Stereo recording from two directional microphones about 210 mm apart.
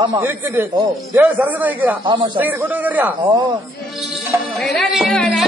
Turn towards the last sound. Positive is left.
turn(degrees=0)  # may be behind; listen again after turning